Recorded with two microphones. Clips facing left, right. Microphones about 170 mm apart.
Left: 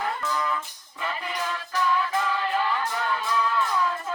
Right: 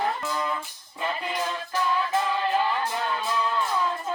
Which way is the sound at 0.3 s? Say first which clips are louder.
Left 1 dB; 25° right (ahead or behind).